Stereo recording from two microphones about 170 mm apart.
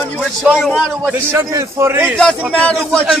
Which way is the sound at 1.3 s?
15° right (ahead or behind).